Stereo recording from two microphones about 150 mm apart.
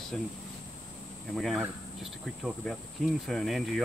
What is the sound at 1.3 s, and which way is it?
Speech, centre (ahead or behind).